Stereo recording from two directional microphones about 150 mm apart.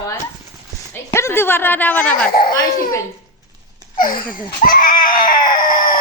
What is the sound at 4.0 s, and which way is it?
Baby cry, 65° left (ahead or behind).